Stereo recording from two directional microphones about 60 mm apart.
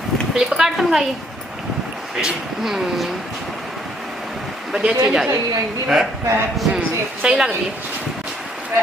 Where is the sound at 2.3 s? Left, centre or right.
Centre.